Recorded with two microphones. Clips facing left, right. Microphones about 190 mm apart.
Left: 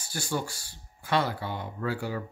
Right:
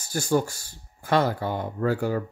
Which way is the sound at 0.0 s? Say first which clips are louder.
Right 8 dB; 45° right (ahead or behind).